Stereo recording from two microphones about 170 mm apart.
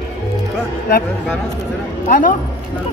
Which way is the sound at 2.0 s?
50° left (ahead or behind).